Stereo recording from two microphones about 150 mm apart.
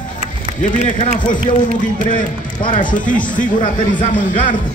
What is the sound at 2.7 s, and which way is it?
Speech, 60° left (ahead or behind).